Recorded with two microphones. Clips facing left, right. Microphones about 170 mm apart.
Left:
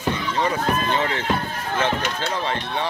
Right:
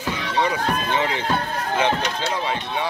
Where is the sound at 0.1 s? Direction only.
75° right (ahead or behind).